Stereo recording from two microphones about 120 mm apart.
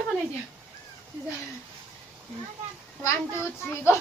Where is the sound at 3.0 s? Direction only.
20° left (ahead or behind).